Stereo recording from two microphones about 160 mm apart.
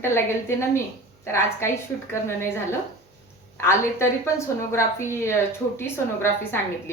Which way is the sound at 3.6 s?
15° left (ahead or behind).